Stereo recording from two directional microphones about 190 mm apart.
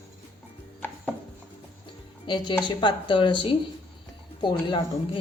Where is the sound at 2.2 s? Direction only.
25° left (ahead or behind).